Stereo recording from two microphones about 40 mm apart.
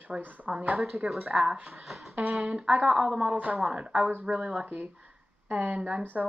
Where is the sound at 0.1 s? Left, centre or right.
Centre.